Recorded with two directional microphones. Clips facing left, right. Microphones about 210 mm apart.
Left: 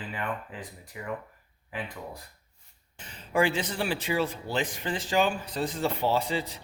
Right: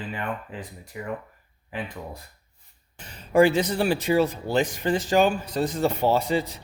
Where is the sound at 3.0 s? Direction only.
40° right (ahead or behind).